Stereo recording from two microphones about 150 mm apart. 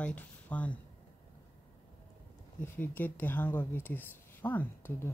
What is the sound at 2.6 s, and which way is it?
Speech, 15° left (ahead or behind).